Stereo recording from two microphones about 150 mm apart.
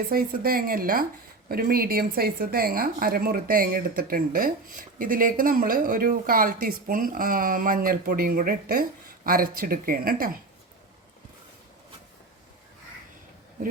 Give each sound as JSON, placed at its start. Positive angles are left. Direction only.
{"t": 0.1, "sound": "a woman's voice", "side_deg": -80}
{"t": 1.5, "sound": "a woman's voice", "side_deg": -85}